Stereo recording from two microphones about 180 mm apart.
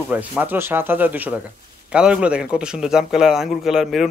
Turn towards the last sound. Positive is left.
turn(degrees=0)  # may be behind; listen again after turning